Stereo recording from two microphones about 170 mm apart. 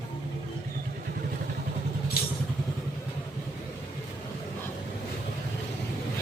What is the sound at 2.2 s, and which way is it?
Vehicle, 65° left (ahead or behind).